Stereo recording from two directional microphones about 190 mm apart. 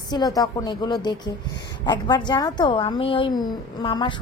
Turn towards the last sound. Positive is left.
turn(degrees=25)  # may be behind; listen again after turning